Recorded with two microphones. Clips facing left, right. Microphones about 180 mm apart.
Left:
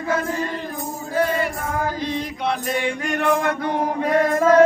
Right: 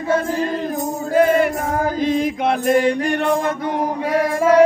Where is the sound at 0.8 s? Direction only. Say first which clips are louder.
Right 6 dB; 50° right (ahead or behind).